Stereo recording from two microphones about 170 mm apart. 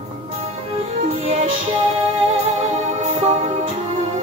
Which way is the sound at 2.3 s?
35° right (ahead or behind).